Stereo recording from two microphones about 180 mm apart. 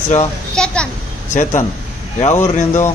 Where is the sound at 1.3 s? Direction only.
40° left (ahead or behind).